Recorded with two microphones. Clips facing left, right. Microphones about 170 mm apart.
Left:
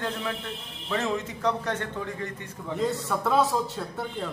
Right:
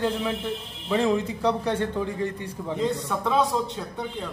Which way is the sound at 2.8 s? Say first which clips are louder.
Even; centre (ahead or behind).